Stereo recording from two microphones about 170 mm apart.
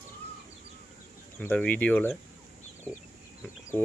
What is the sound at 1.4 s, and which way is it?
Speech, 10° left (ahead or behind).